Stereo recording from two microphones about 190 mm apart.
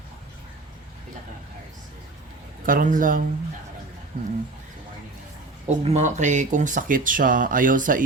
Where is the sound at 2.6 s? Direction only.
45° right (ahead or behind).